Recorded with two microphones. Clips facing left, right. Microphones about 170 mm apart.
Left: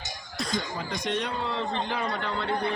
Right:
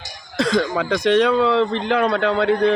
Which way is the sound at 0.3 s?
90° right.